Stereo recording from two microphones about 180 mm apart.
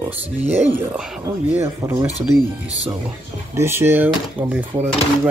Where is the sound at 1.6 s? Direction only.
15° right (ahead or behind).